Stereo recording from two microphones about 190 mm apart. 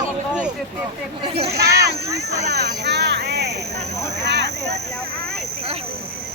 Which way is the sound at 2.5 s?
60° right (ahead or behind).